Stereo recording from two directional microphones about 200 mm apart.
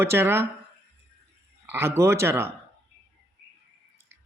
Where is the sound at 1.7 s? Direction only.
15° right (ahead or behind).